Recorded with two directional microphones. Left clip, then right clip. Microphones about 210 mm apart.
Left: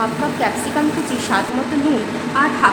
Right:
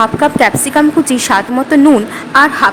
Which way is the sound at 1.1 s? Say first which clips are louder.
Right 7 dB; 45° right (ahead or behind).